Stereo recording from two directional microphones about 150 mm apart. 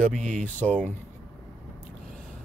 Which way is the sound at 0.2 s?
55° right (ahead or behind).